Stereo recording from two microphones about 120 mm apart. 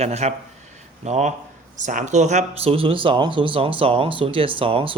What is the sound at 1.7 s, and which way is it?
Speech, 90° right.